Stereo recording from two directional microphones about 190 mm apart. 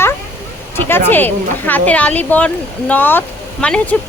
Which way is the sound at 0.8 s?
10° left (ahead or behind).